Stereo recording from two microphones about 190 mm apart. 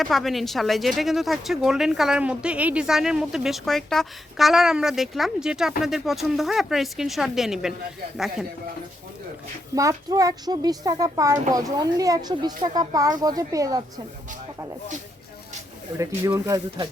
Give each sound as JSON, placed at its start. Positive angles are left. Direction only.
{"t": 0.0, "sound": "speech", "side_deg": 0}
{"t": 9.7, "sound": "speech", "side_deg": -20}
{"t": 16.0, "sound": "speech", "side_deg": -15}